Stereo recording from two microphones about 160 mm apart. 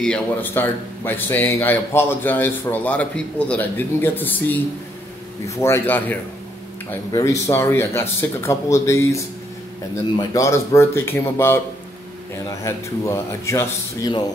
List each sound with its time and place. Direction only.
0.0 s speech: 10° left (ahead or behind)
5.6 s speech: 15° left (ahead or behind)